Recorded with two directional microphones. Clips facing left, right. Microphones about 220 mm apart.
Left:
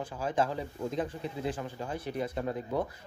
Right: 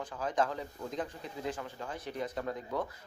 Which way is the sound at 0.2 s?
30° left (ahead or behind).